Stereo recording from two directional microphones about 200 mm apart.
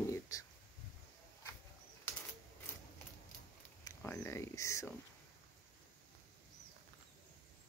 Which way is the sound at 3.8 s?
10° left (ahead or behind).